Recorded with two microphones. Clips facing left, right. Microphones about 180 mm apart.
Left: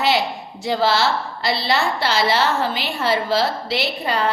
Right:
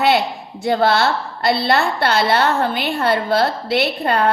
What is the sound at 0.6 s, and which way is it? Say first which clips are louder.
A woman's voice: right 3 dB; 55° right (ahead or behind).